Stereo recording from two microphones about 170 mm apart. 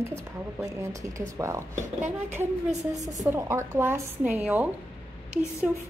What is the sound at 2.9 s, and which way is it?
A woman's voice, 20° right (ahead or behind).